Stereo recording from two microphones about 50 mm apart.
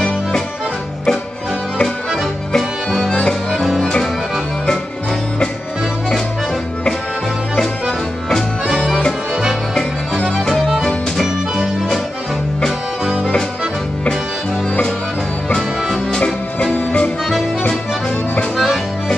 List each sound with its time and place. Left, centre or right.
2.5 s music: centre
3.1 s accordion: left
3.6 s music: centre
8.6 s music: centre
10.4 s music: centre
13.0 s music: centre
16.1 s music: centre
16.7 s accordion: left